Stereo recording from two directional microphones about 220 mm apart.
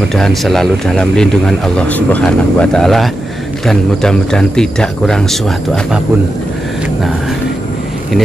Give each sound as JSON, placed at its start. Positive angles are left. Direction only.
{"t": 0.1, "sound": "speech", "side_deg": 0}